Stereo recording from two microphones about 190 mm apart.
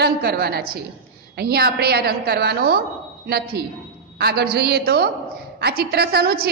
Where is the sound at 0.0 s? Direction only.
55° right (ahead or behind).